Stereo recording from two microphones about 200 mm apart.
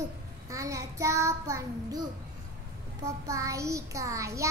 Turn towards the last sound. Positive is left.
turn(degrees=-15)  # may be behind; listen again after turning